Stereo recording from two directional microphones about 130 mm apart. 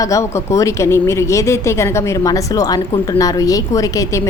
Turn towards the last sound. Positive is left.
turn(degrees=25)  # may be behind; listen again after turning